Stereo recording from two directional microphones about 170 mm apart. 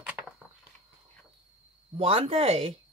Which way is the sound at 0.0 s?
10° right (ahead or behind).